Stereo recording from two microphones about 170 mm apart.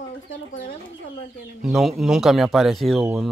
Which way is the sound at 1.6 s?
Centre (ahead or behind).